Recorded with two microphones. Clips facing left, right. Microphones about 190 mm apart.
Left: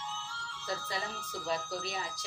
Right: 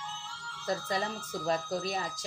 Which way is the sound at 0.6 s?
45° right (ahead or behind).